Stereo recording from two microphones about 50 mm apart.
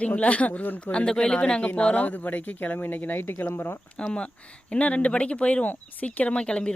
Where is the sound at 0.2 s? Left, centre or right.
Left.